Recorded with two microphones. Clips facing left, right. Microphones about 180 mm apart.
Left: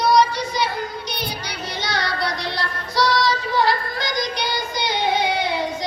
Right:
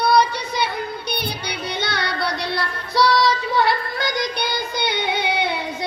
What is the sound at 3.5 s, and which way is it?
Music, 60° right (ahead or behind).